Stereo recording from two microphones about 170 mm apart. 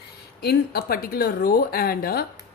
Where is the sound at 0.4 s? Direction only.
65° left (ahead or behind).